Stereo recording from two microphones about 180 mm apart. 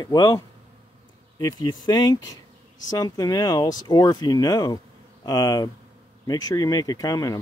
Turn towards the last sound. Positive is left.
turn(degrees=20)  # may be behind; listen again after turning